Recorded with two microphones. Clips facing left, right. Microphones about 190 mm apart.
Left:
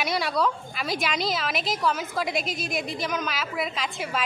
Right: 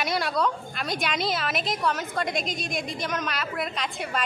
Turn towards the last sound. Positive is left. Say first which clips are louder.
# even
turn(degrees=0)  # may be behind; listen again after turning